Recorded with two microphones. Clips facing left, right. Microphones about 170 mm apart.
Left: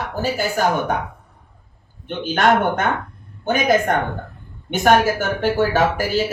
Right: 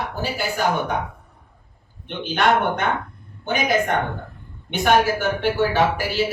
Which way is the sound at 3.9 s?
40° left (ahead or behind).